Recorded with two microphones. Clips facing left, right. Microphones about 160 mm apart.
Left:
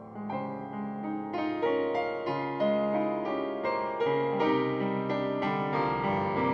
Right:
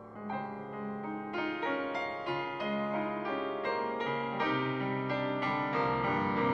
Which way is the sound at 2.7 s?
40° left (ahead or behind).